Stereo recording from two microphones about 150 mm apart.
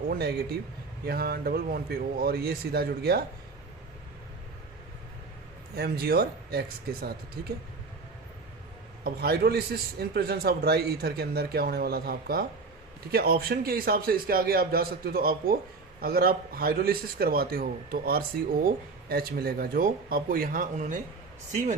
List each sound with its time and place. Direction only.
0.1 s a man's voice: 90° right
5.7 s a man's voice: 90° right
9.0 s a man's voice: 90° right; by 21.8 s 55° right (ahead or behind)